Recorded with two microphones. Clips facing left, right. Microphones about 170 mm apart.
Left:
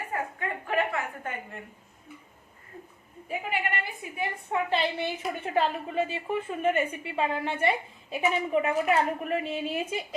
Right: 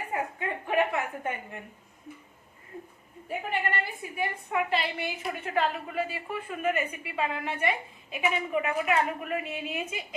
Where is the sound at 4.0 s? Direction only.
25° left (ahead or behind).